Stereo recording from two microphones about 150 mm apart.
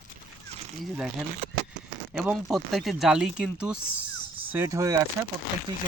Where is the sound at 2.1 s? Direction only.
5° right (ahead or behind).